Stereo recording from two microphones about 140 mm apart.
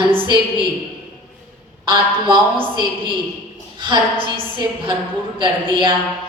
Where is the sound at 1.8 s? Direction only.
35° right (ahead or behind).